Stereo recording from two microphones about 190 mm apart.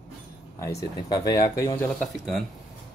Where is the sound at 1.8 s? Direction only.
Centre (ahead or behind).